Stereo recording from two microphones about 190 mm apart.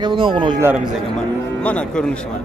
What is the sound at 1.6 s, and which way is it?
Speech, 5° left (ahead or behind).